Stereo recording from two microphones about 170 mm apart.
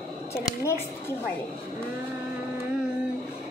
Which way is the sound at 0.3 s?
15° left (ahead or behind).